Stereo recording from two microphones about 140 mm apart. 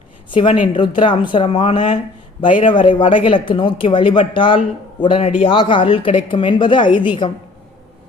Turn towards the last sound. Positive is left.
turn(degrees=40)  # may be behind; listen again after turning